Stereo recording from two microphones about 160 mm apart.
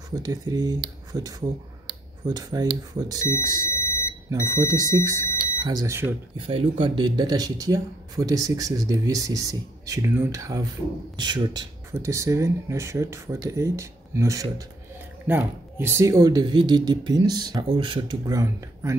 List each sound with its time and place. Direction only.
0.1 s speech: 20° right (ahead or behind)
4.3 s speech: 20° right (ahead or behind)
6.3 s speech: 35° right (ahead or behind); by 18.9 s 20° right (ahead or behind)